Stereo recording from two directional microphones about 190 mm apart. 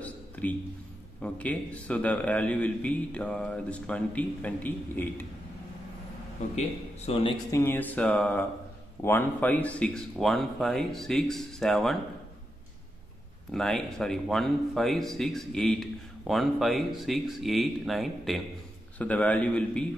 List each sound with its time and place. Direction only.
0.0 s a sound: 10° left (ahead or behind)
1.2 s a man's voice: 5° left (ahead or behind)
7.1 s a man's voice: 30° left (ahead or behind)
7.5 s a man's voice: 10° left (ahead or behind)
13.5 s a man's voice: centre (ahead or behind)